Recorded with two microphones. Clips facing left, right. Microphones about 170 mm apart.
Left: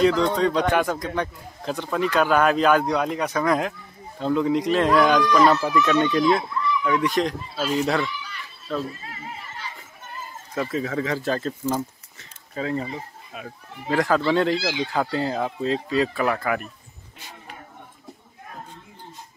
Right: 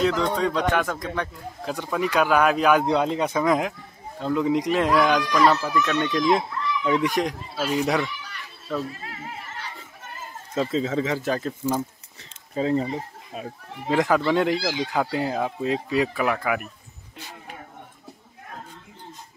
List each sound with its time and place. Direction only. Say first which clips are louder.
0.0 s speech: left 3 dB; 5° right (ahead or behind)
2.8 s a man's voice: right 2 dB; 25° right (ahead or behind)
4.8 s speech: left 2 dB; 5° right (ahead or behind)
6.3 s speech: even; 20° right (ahead or behind)
9.0 s neigh: right 1 dB; 65° right (ahead or behind)
10.5 s a man's voice: right 2 dB; 20° right (ahead or behind)
12.2 s speech: right 4 dB; 30° right (ahead or behind)
13.8 s speech: even; 15° right (ahead or behind)